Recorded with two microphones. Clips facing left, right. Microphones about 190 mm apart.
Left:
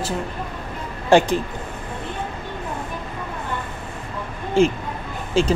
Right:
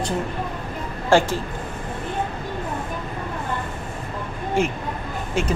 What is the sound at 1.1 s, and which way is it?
Speech, 20° left (ahead or behind).